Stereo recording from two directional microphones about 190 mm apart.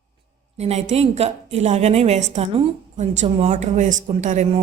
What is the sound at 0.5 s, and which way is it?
A woman's voice, 35° right (ahead or behind).